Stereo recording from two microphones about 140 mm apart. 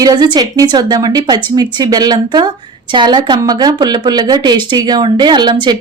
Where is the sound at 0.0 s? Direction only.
30° right (ahead or behind).